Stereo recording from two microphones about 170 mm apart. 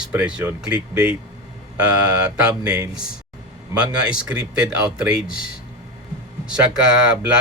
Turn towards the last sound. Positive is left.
turn(degrees=-5)  # may be behind; listen again after turning